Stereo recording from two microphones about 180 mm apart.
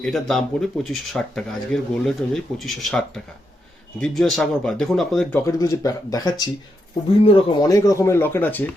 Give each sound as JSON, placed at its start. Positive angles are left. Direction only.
{"t": 0.0, "sound": "speech", "side_deg": 5}
{"t": 4.0, "sound": "speech", "side_deg": 0}
{"t": 5.5, "sound": "speech", "side_deg": 20}
{"t": 7.7, "sound": "speech", "side_deg": 15}